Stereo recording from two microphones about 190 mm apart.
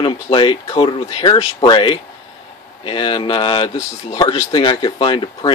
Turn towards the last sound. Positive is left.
turn(degrees=25)  # may be behind; listen again after turning